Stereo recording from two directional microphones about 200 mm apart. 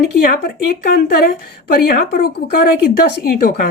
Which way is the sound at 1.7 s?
45° left (ahead or behind).